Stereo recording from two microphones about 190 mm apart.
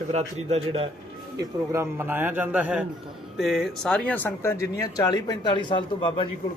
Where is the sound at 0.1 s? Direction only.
35° right (ahead or behind).